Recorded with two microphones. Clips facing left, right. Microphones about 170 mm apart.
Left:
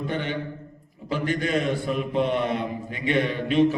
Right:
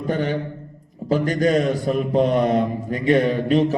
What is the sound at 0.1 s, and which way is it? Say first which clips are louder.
A man's voice: right 6 dB; 40° right (ahead or behind).